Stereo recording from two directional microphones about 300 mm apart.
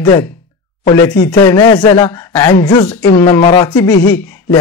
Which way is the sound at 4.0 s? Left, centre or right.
Left.